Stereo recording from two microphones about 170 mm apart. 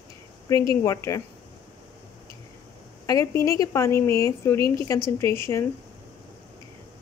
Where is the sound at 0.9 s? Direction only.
20° left (ahead or behind).